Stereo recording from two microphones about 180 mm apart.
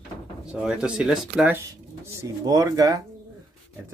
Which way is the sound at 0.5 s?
5° right (ahead or behind).